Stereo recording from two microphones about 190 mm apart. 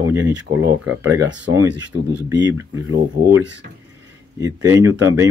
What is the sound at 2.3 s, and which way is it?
Speech, 20° right (ahead or behind).